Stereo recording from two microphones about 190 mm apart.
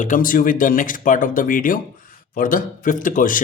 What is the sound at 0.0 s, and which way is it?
A man's voice, 45° left (ahead or behind).